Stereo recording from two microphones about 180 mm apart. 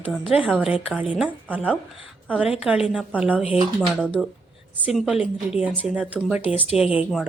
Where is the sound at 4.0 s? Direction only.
5° left (ahead or behind).